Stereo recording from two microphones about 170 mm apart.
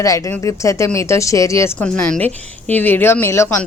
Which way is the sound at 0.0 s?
20° left (ahead or behind).